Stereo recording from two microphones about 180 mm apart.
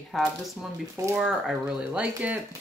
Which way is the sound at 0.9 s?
15° right (ahead or behind).